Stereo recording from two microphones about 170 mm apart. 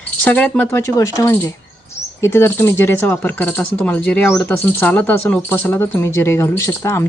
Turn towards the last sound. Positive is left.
turn(degrees=15)  # may be behind; listen again after turning